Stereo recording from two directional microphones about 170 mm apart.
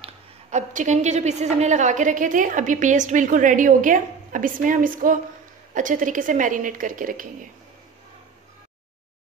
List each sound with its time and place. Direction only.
0.0 s a woman's voice: 45° right (ahead or behind)